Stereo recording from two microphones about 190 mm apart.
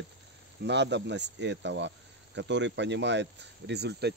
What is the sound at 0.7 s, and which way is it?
Speech, 65° right (ahead or behind).